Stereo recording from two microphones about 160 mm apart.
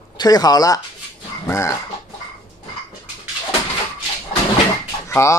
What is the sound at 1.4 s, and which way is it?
Chicken, 20° left (ahead or behind).